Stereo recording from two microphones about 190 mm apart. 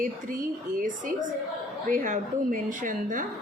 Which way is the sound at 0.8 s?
45° right (ahead or behind).